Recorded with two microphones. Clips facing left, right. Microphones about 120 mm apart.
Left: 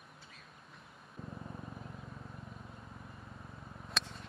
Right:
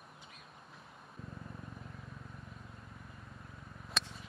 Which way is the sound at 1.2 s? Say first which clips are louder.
Left 3 dB; centre (ahead or behind).